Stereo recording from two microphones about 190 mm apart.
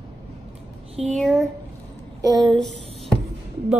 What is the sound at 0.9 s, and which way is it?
Speech, 35° right (ahead or behind).